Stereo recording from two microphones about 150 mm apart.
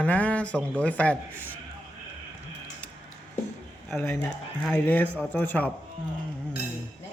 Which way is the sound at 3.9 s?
5° left (ahead or behind).